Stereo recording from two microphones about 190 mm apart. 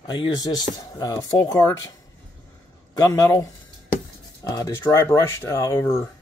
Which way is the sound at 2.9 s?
20° left (ahead or behind).